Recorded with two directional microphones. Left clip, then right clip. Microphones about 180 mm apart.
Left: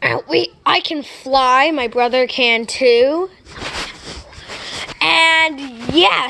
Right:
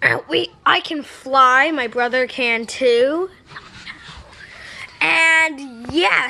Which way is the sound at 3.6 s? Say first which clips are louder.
Left 11 dB; 15° right (ahead or behind).